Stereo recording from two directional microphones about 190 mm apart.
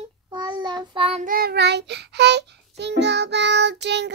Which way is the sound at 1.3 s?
55° right (ahead or behind).